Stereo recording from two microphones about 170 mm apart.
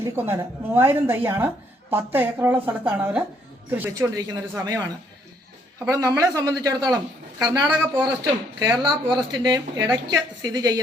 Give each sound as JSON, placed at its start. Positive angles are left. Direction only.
{"t": 0.0, "sound": "a woman's voice", "side_deg": -15}
{"t": 5.9, "sound": "speech", "side_deg": -20}
{"t": 7.6, "sound": "a woman's voice", "side_deg": -5}
{"t": 8.0, "sound": "speech", "side_deg": -25}